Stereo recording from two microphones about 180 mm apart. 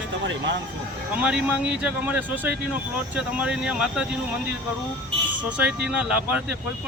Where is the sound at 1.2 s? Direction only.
5° right (ahead or behind).